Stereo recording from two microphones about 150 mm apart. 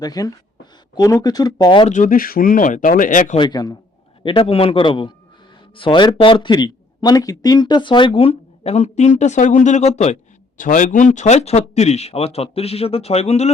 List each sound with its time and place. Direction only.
0.0 s speech: 25° left (ahead or behind)
1.9 s speech: 60° left (ahead or behind)
3.3 s speech: 30° left (ahead or behind); by 10.2 s 50° left (ahead or behind)
10.6 s speech: 60° left (ahead or behind)